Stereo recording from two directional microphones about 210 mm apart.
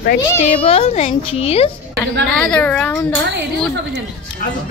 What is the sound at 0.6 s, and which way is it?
A woman's voice, 30° left (ahead or behind).